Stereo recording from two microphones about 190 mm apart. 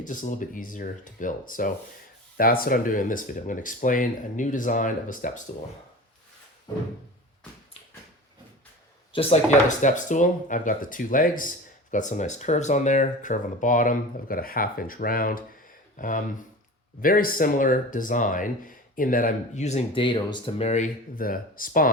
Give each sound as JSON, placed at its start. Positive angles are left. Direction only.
{"t": 0.0, "sound": "speech", "side_deg": 45}
{"t": 9.1, "sound": "speech", "side_deg": 35}